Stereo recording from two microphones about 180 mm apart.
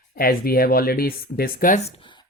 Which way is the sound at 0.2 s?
55° left (ahead or behind).